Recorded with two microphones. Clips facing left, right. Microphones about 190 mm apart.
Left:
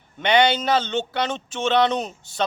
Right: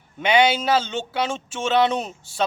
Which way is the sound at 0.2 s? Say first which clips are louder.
Even; 5° right (ahead or behind).